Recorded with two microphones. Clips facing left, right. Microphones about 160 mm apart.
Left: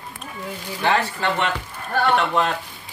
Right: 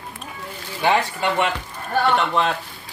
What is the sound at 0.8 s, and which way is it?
Speech, 10° right (ahead or behind).